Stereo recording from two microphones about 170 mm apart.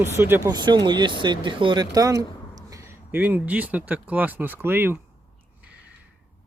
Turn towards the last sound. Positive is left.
turn(degrees=-10)  # may be behind; listen again after turning